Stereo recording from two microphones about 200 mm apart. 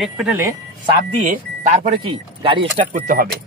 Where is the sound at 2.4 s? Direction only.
25° right (ahead or behind).